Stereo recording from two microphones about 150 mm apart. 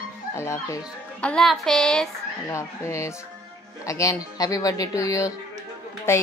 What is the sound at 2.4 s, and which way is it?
A woman's voice, 20° left (ahead or behind).